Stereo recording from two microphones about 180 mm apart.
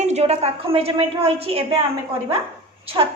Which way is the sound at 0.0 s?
40° right (ahead or behind).